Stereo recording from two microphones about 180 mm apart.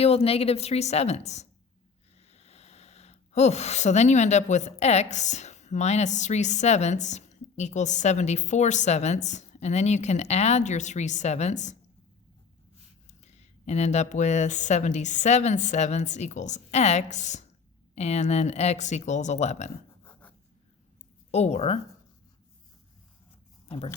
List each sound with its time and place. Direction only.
0.0 s speech: 35° left (ahead or behind)
13.1 s speech: 40° left (ahead or behind)
21.2 s speech: 35° left (ahead or behind)
23.6 s speech: 35° left (ahead or behind)